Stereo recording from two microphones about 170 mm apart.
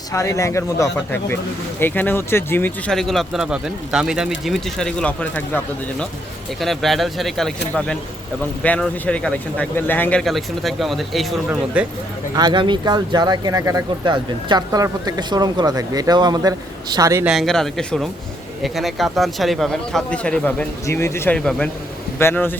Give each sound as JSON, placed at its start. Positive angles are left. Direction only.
{"t": 0.1, "sound": "speech", "side_deg": 15}
{"t": 12.3, "sound": "speech", "side_deg": -25}
{"t": 17.2, "sound": "speech", "side_deg": 0}